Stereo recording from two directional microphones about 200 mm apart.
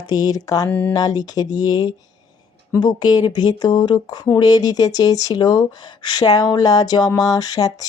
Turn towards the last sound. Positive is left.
turn(degrees=20)  # may be behind; listen again after turning